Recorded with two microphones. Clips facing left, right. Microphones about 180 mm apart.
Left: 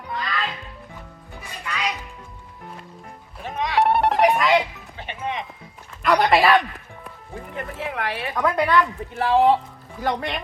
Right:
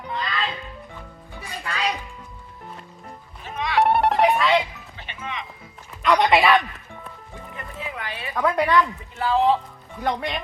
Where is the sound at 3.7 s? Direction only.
Centre (ahead or behind).